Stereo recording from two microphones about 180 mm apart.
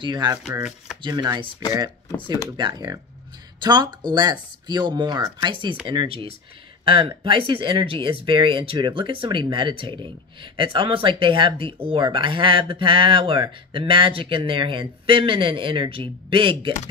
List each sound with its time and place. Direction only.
0.0 s speech: 25° right (ahead or behind)
0.4 s speech: 5° right (ahead or behind)
1.0 s speech: 25° right (ahead or behind)
2.5 s speech: 20° right (ahead or behind)